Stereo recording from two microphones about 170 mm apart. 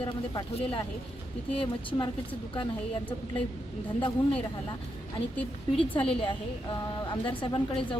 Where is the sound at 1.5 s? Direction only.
30° left (ahead or behind).